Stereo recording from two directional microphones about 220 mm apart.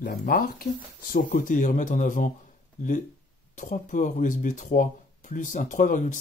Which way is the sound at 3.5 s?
35° left (ahead or behind).